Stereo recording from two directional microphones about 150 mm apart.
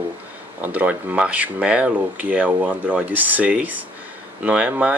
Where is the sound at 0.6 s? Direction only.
10° right (ahead or behind).